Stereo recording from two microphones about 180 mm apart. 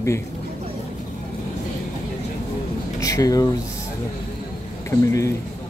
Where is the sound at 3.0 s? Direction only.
20° left (ahead or behind).